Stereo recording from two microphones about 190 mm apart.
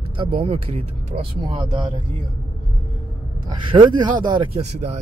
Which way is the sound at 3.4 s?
25° right (ahead or behind).